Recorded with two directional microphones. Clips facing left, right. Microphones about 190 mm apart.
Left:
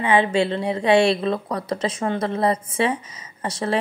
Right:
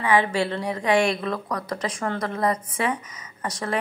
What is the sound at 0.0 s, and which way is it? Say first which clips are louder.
A woman's voice: left 3 dB; 25° left (ahead or behind).